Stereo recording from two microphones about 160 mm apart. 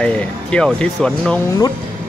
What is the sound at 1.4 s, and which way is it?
Speech, 20° left (ahead or behind).